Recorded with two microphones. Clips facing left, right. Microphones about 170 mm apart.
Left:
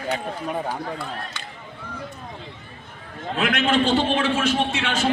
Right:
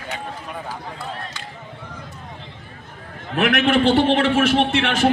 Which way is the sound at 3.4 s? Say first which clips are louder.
Right 4 dB; 70° right (ahead or behind).